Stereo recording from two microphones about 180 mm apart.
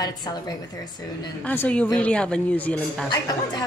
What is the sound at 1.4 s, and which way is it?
Speech, 10° left (ahead or behind).